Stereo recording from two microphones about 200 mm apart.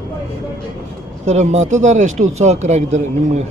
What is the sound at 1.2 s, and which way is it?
A man's voice, 35° right (ahead or behind).